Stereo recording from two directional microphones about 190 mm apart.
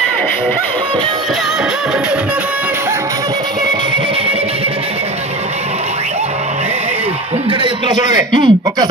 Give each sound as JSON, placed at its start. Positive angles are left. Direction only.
{"t": 7.6, "sound": "a man's voice", "side_deg": -25}